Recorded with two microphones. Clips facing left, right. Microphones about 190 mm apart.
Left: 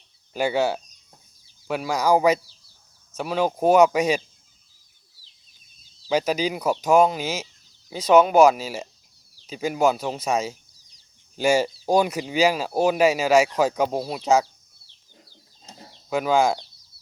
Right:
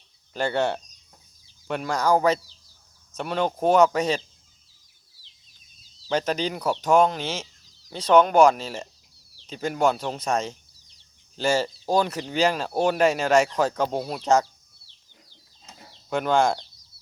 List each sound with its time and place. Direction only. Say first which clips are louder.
0.3 s speech: left 2 dB; 5° left (ahead or behind)
6.1 s speech: left 2 dB; 10° left (ahead or behind)
15.2 s chicken: left 3 dB; 35° left (ahead or behind)
16.0 s speech: left 1 dB; 5° left (ahead or behind)